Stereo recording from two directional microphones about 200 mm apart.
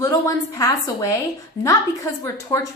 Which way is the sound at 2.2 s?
15° left (ahead or behind).